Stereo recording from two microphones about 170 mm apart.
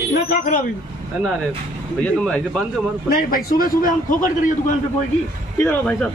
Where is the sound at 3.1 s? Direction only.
55° left (ahead or behind).